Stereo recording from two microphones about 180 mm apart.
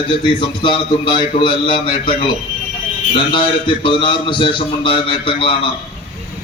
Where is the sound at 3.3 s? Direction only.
25° left (ahead or behind).